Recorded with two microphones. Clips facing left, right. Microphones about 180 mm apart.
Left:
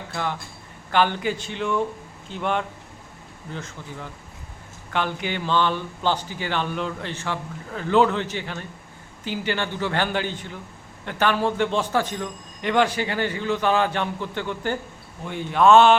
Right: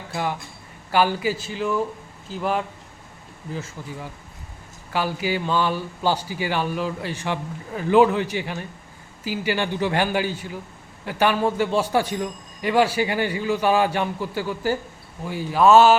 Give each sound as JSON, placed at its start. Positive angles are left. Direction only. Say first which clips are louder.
{"t": 0.1, "sound": "a man's voice", "louder": "right 2 dB", "side_deg": -10}